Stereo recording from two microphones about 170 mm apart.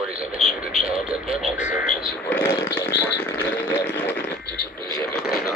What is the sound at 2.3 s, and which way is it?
Speech, 15° left (ahead or behind).